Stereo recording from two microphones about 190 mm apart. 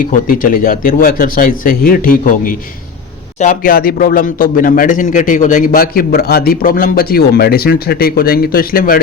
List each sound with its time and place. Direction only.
0.1 s speech: 45° left (ahead or behind)